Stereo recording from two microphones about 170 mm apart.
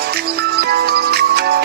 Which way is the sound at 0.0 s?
70° right (ahead or behind).